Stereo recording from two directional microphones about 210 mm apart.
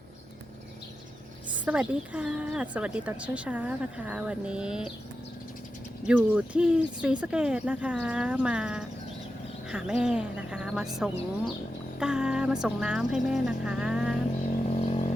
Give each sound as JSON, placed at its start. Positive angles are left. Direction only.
{"t": 1.6, "sound": "a woman's voice", "side_deg": -5}
{"t": 6.1, "sound": "a woman's voice", "side_deg": -5}
{"t": 14.8, "sound": "vehicle", "side_deg": 30}